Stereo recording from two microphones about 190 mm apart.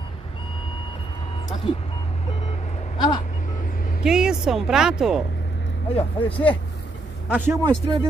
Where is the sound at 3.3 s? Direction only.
45° left (ahead or behind).